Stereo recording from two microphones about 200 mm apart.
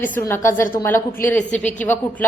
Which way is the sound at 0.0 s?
10° left (ahead or behind).